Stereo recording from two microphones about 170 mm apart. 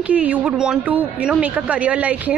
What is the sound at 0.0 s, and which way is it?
Speech, 10° right (ahead or behind).